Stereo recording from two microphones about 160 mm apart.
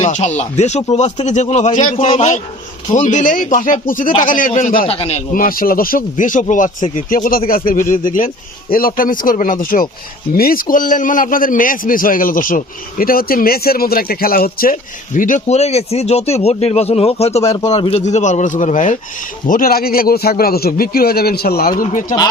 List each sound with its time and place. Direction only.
0.0 s a man's voice: 45° left (ahead or behind)
4.9 s a man's voice: 40° left (ahead or behind)
5.3 s a man's voice: 60° left (ahead or behind)
19.5 s a man's voice: 60° left (ahead or behind)